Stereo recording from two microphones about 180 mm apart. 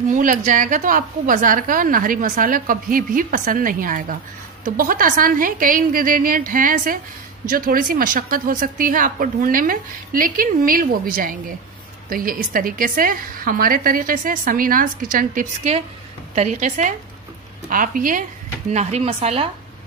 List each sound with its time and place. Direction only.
0.1 s a woman's voice: 50° right (ahead or behind)
18.7 s a woman's voice: 40° right (ahead or behind)